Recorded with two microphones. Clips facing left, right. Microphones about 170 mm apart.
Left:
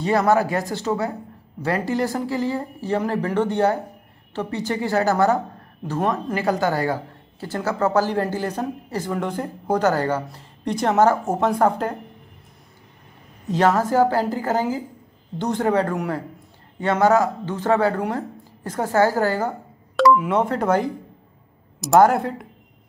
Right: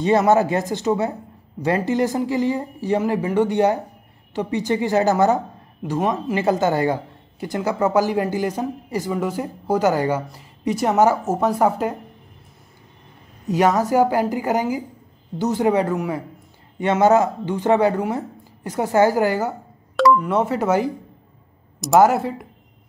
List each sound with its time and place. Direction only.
0.3 s a woman's voice: 20° right (ahead or behind)
6.3 s a woman's voice: 20° right (ahead or behind)
13.5 s a woman's voice: 10° right (ahead or behind)
20.0 s speech: centre (ahead or behind)